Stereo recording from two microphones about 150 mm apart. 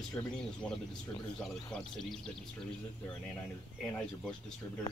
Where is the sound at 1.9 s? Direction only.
Centre (ahead or behind).